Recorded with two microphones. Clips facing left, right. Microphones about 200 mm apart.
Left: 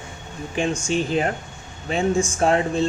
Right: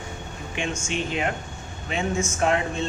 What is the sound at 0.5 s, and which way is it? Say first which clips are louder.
Speech: left 6 dB; 35° left (ahead or behind).